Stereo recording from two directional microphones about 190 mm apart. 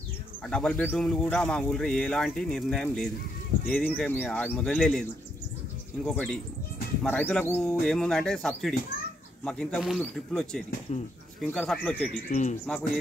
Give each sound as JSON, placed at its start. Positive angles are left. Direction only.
{"t": 0.5, "sound": "speech", "side_deg": 5}
{"t": 6.0, "sound": "speech", "side_deg": 5}
{"t": 10.9, "sound": "speech", "side_deg": 35}
{"t": 11.5, "sound": "speech", "side_deg": 5}
{"t": 12.3, "sound": "speech", "side_deg": 40}
{"t": 12.6, "sound": "speech", "side_deg": 5}